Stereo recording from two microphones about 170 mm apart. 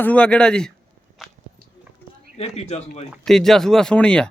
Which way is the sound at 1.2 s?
Centre (ahead or behind).